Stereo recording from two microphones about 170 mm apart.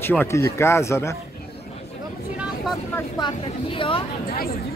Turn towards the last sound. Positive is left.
turn(degrees=30)  # may be behind; listen again after turning